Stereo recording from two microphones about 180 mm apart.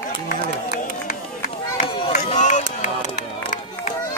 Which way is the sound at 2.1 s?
40° left (ahead or behind).